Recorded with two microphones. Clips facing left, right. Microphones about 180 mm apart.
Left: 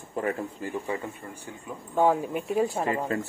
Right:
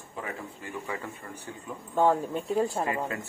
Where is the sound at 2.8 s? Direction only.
30° left (ahead or behind).